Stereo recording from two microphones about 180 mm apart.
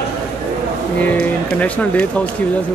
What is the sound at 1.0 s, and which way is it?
Speech, 10° left (ahead or behind).